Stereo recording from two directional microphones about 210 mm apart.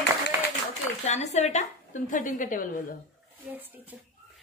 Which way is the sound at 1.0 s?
30° left (ahead or behind).